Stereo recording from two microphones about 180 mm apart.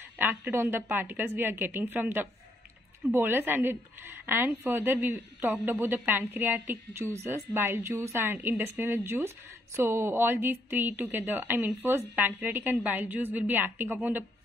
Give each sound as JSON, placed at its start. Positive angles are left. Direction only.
{"t": 0.2, "sound": "a woman's voice", "side_deg": -10}